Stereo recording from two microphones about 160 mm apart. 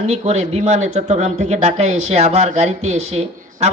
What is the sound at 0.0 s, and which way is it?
Speech, 45° right (ahead or behind).